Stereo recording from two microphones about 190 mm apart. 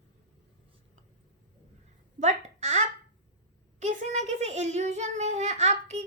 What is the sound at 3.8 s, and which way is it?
A child's voice, 40° right (ahead or behind).